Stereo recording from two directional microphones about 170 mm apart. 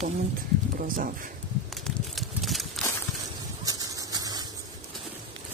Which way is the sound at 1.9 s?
Centre (ahead or behind).